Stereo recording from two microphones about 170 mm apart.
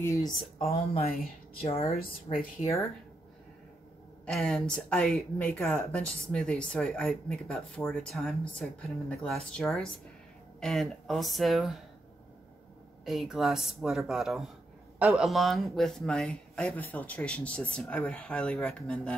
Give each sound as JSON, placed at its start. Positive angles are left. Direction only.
{"t": 0.0, "sound": "speech", "side_deg": 15}
{"t": 0.4, "sound": "speech", "side_deg": 35}
{"t": 4.3, "sound": "speech", "side_deg": 5}
{"t": 13.0, "sound": "speech", "side_deg": 0}